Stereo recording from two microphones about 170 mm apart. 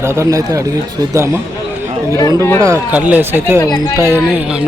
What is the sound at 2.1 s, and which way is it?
Speech, 20° left (ahead or behind).